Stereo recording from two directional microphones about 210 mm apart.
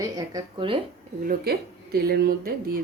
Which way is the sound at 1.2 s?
45° right (ahead or behind).